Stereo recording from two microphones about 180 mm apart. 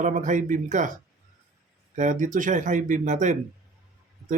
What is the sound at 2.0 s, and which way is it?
Speech, 45° right (ahead or behind).